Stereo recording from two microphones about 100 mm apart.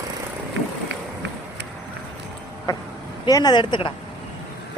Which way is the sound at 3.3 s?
40° left (ahead or behind).